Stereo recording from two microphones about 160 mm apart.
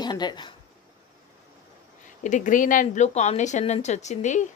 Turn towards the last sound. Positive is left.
turn(degrees=50)  # may be behind; listen again after turning